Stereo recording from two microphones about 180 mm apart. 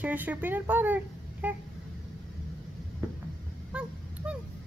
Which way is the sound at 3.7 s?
5° right (ahead or behind).